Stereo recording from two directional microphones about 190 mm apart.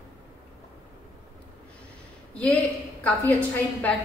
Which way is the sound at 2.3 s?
5° left (ahead or behind).